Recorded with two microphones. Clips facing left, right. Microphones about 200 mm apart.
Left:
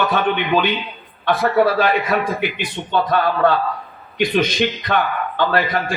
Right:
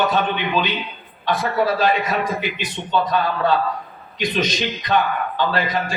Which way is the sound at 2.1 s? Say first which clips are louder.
Left 3 dB; 55° left (ahead or behind).